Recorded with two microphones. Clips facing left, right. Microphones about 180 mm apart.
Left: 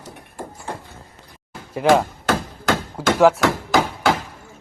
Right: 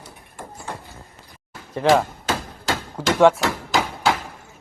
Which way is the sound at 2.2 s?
55° left (ahead or behind).